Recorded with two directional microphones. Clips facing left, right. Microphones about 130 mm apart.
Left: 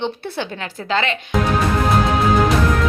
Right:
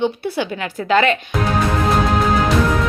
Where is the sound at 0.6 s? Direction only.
25° left (ahead or behind).